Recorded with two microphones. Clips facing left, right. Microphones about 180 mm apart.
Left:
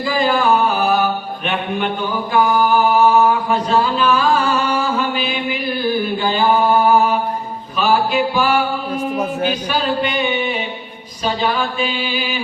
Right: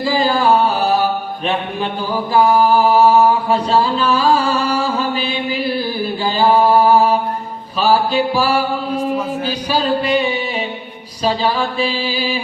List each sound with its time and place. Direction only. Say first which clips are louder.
0.0 s music: right 1 dB; 30° right (ahead or behind)
2.3 s mantra: right 3 dB; 35° right (ahead or behind)
7.8 s music: right 1 dB; 35° right (ahead or behind)
9.4 s mantra: even; 35° right (ahead or behind)